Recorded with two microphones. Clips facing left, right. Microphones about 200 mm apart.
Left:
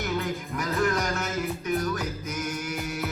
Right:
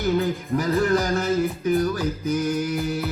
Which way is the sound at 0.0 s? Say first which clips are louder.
Right 7 dB; 35° right (ahead or behind).